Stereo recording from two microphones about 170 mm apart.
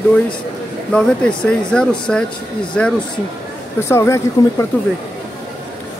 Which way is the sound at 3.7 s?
15° left (ahead or behind).